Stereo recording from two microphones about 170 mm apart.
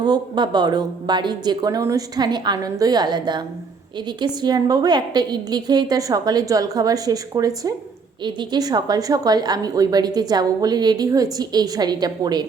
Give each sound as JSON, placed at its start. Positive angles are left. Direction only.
{"t": 0.0, "sound": "a woman's voice", "side_deg": -25}